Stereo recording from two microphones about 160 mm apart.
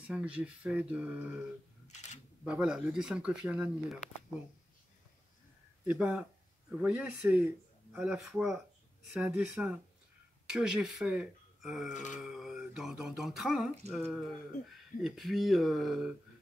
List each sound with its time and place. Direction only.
0.0 s speech: 10° right (ahead or behind)
2.4 s speech: 5° right (ahead or behind)
5.9 s speech: 5° right (ahead or behind)
11.9 s wail: 50° left (ahead or behind)
12.2 s speech: 5° right (ahead or behind)